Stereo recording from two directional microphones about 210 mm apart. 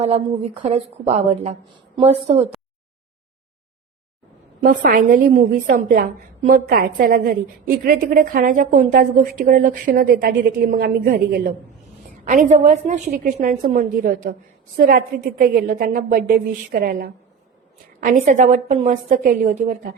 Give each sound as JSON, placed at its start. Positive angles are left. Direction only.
{"t": 0.0, "sound": "a woman's voice", "side_deg": -30}
{"t": 4.6, "sound": "a woman's voice", "side_deg": -40}